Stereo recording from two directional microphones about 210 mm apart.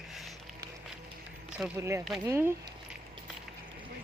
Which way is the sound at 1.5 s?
10° right (ahead or behind).